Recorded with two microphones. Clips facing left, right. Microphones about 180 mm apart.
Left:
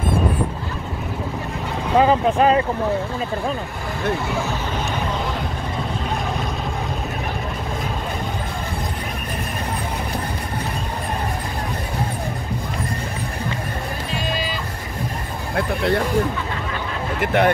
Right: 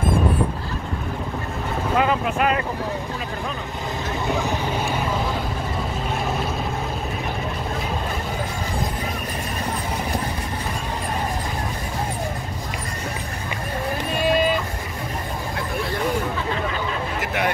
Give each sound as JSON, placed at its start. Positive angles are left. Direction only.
{"t": 2.0, "sound": "speech", "side_deg": 30}
{"t": 14.1, "sound": "music", "side_deg": -55}
{"t": 15.5, "sound": "vehicle", "side_deg": 65}
{"t": 17.2, "sound": "a sound", "side_deg": 55}